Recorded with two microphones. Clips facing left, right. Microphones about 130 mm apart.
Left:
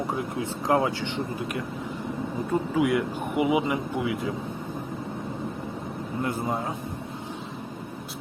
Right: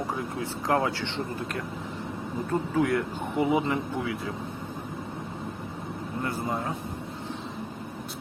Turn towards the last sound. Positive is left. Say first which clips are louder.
# left 2 dB
turn(degrees=20)  # may be behind; listen again after turning